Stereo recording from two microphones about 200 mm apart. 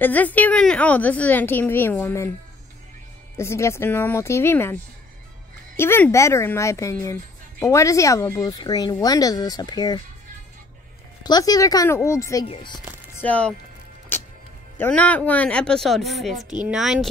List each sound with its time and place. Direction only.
0.0 s a woman's voice: 10° left (ahead or behind)
3.3 s a woman's voice: 15° left (ahead or behind)
5.8 s a woman's voice: 10° left (ahead or behind)
11.2 s a woman's voice: 20° left (ahead or behind)
12.4 s speech: 25° left (ahead or behind)
13.2 s a woman's voice: 5° left (ahead or behind)
14.8 s speech: 5° left (ahead or behind)